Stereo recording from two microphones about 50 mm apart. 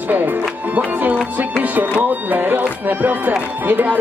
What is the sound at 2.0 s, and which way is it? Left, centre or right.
Speech, right.